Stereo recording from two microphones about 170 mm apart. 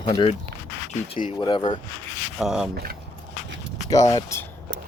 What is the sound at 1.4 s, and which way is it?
Speech, 25° left (ahead or behind).